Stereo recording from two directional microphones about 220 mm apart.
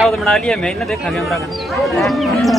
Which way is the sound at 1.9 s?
Centre (ahead or behind).